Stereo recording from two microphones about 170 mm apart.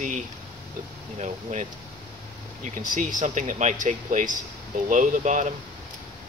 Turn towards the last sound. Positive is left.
turn(degrees=-45)  # may be behind; listen again after turning